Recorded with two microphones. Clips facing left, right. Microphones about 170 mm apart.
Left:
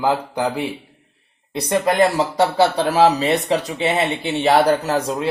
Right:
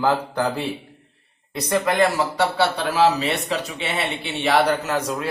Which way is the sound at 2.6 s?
40° left (ahead or behind).